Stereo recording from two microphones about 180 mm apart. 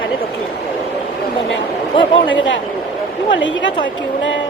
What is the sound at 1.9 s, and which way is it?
Speech, 30° left (ahead or behind).